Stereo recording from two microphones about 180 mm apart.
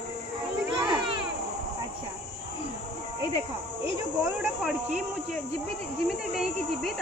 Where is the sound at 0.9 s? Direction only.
25° right (ahead or behind).